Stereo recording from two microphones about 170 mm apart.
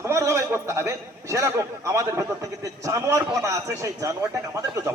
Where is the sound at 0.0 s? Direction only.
15° right (ahead or behind).